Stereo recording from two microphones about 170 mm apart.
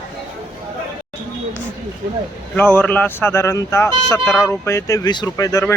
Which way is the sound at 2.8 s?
10° left (ahead or behind).